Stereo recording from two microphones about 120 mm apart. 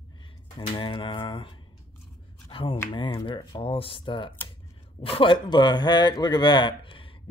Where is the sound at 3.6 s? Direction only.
50° left (ahead or behind).